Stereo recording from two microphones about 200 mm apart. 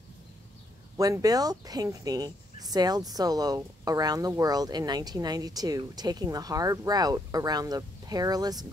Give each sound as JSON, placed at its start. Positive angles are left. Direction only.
{"t": 0.9, "sound": "speech", "side_deg": -15}